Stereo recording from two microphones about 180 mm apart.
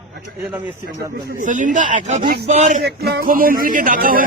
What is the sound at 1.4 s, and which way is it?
A man's voice, 45° right (ahead or behind).